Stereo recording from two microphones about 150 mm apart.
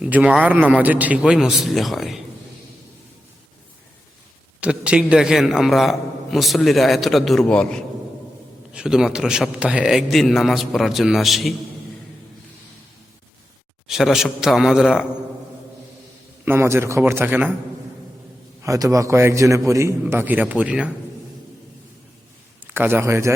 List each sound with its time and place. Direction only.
0.0 s a man's voice: 10° right (ahead or behind)
4.6 s a man's voice: 5° right (ahead or behind)
8.7 s a man's voice: 5° right (ahead or behind)
13.8 s a man's voice: 5° right (ahead or behind)
16.5 s a man's voice: 15° right (ahead or behind)
18.6 s a man's voice: 20° right (ahead or behind)
22.6 s a man's voice: 15° right (ahead or behind)